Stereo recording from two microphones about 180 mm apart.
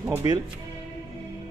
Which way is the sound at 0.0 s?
15° right (ahead or behind).